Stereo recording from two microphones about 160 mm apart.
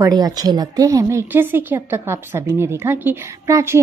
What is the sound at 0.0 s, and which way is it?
A woman's voice, 25° right (ahead or behind).